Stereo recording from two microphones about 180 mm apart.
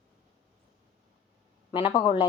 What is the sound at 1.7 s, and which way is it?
Speech, 25° left (ahead or behind).